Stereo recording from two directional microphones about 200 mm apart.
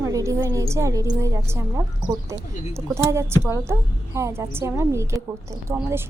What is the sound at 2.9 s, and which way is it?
A woman's voice, 15° right (ahead or behind).